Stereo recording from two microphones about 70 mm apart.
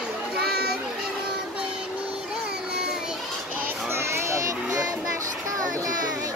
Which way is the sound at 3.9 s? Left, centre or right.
Right.